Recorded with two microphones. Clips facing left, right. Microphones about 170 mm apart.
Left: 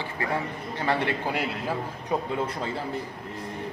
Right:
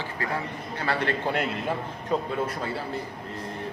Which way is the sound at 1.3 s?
Centre (ahead or behind).